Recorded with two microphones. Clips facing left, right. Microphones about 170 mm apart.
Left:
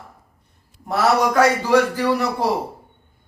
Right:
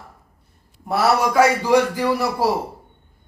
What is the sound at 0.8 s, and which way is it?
A man's voice, 10° right (ahead or behind).